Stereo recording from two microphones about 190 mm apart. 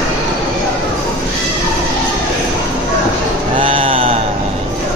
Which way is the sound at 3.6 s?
30° right (ahead or behind).